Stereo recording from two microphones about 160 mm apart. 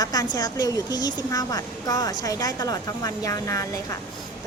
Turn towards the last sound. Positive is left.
turn(degrees=20)  # may be behind; listen again after turning